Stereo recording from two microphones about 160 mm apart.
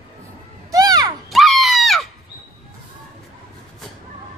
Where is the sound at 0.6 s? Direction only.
20° right (ahead or behind).